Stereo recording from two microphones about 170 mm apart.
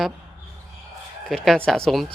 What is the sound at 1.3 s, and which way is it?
Speech, 5° left (ahead or behind).